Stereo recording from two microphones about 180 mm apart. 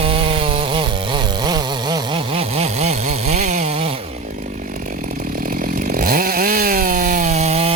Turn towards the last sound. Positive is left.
turn(degrees=-35)  # may be behind; listen again after turning